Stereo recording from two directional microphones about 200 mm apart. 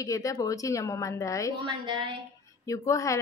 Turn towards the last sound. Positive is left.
turn(degrees=15)  # may be behind; listen again after turning